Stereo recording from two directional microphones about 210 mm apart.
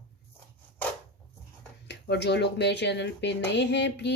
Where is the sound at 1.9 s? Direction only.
55° left (ahead or behind).